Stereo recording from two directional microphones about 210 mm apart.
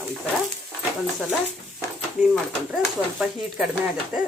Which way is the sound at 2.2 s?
Centre (ahead or behind).